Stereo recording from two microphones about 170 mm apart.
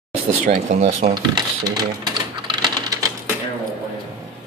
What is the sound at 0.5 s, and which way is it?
Speech, 45° right (ahead or behind).